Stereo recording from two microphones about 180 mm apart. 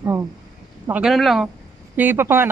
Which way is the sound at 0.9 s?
5° right (ahead or behind).